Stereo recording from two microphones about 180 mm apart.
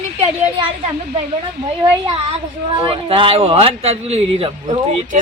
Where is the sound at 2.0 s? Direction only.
30° right (ahead or behind).